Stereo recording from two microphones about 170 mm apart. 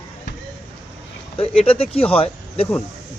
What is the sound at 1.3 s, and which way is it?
Speech, 35° left (ahead or behind).